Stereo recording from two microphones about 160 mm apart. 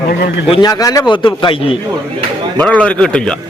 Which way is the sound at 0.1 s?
70° left (ahead or behind).